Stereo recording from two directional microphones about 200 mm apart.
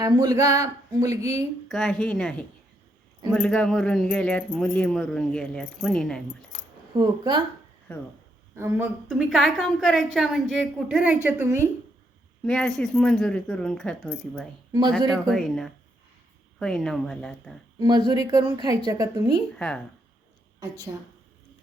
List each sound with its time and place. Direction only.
0.0 s speech: 15° right (ahead or behind)
1.7 s a woman's voice: centre (ahead or behind)
3.3 s a woman's voice: 5° left (ahead or behind)
6.5 s a sound: 35° left (ahead or behind)
6.9 s speech: 25° right (ahead or behind)
8.5 s a woman's voice: 10° right (ahead or behind)
12.5 s a woman's voice: 5° left (ahead or behind)
14.7 s speech: 20° right (ahead or behind)
15.1 s a woman's voice: centre (ahead or behind)
17.7 s speech: 20° right (ahead or behind)
19.5 s a woman's voice: 5° left (ahead or behind)
20.6 s speech: 20° right (ahead or behind)